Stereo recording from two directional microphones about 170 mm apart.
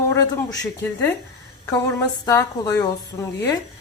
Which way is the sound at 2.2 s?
20° left (ahead or behind).